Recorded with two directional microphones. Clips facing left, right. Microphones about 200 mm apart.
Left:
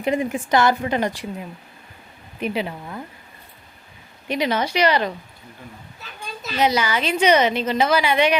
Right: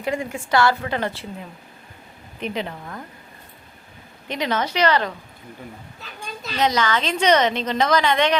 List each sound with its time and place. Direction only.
0.0 s a woman's voice: 20° left (ahead or behind)
2.4 s a woman's voice: 10° left (ahead or behind)
4.3 s a woman's voice: 10° left (ahead or behind)
6.4 s a woman's voice: 10° left (ahead or behind)